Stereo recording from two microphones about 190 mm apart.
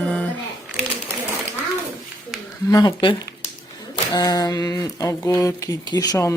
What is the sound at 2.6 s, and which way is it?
Speech, 20° left (ahead or behind).